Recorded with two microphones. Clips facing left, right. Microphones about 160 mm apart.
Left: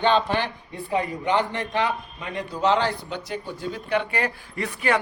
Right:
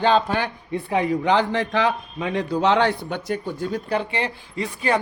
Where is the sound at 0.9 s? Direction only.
90° right; by 2.9 s 65° right (ahead or behind).